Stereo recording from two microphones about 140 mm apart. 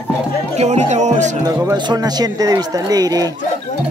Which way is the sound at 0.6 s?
55° right (ahead or behind).